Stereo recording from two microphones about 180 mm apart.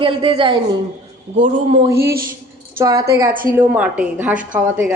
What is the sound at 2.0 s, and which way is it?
Speech, 55° right (ahead or behind).